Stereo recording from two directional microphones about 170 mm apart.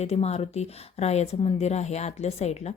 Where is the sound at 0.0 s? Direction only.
40° left (ahead or behind).